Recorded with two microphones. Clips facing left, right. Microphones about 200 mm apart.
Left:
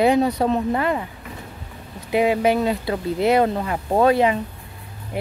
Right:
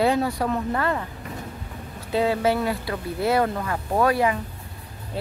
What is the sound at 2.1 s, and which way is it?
Speech, 15° left (ahead or behind).